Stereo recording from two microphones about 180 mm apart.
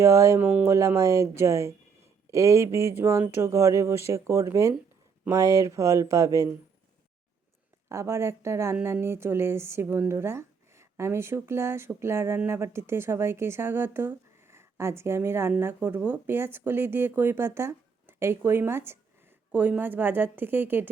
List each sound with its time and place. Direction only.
0.0 s a woman's voice: 15° right (ahead or behind)
7.9 s a woman's voice: 15° right (ahead or behind)